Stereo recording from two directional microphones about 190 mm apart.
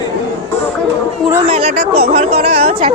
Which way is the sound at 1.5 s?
30° right (ahead or behind).